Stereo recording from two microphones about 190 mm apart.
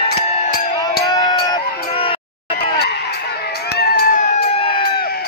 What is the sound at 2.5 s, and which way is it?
Fowl, 60° left (ahead or behind).